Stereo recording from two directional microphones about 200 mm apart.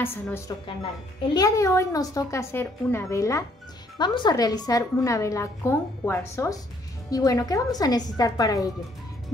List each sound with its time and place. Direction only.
0.0 s a woman's voice: 10° left (ahead or behind)